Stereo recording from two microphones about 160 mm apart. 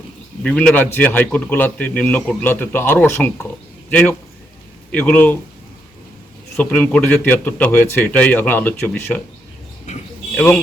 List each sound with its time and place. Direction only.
0.4 s a man's voice: 5° left (ahead or behind)
6.6 s a man's voice: 10° left (ahead or behind)
9.9 s a sound: 45° left (ahead or behind)
10.3 s speech: 5° left (ahead or behind)